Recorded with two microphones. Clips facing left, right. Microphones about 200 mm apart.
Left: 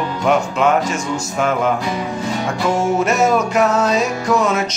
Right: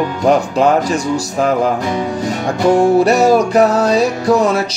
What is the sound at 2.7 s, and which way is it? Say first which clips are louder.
Music: right 7 dB; 35° right (ahead or behind).